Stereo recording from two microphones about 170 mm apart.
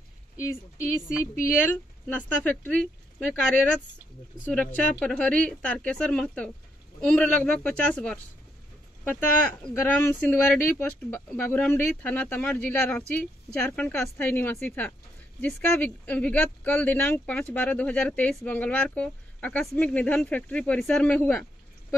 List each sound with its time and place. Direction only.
0.4 s speech: 15° left (ahead or behind)
2.7 s speech: 5° right (ahead or behind)
4.7 s speech: 5° left (ahead or behind)